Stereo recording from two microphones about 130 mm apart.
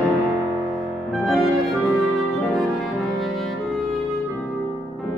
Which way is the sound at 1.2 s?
Centre (ahead or behind).